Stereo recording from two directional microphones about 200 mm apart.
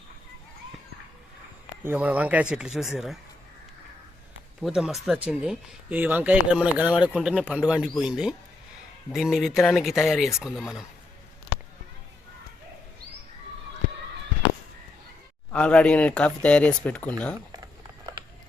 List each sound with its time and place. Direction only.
1.8 s speech: 10° right (ahead or behind)
4.6 s speech: centre (ahead or behind)
15.5 s speech: 5° left (ahead or behind)
17.5 s a sound: 20° right (ahead or behind)